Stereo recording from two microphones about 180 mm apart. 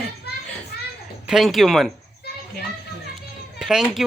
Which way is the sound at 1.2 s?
Centre (ahead or behind).